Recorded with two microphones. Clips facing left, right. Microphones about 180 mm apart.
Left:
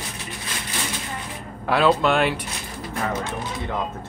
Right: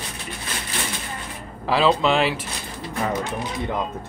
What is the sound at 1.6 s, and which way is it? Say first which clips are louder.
Speech: even; centre (ahead or behind).